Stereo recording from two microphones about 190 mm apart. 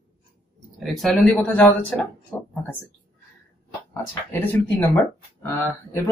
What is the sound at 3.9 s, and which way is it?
Speech, 10° left (ahead or behind).